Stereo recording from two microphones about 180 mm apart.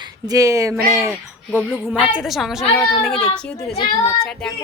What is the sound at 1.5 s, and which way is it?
Speech, 5° left (ahead or behind).